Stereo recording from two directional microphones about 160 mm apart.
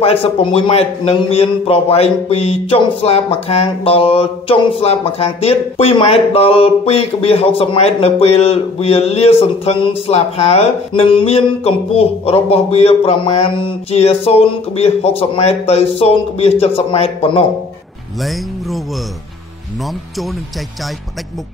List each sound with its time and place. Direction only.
0.0 s a man's voice: 35° left (ahead or behind)
18.2 s music: centre (ahead or behind)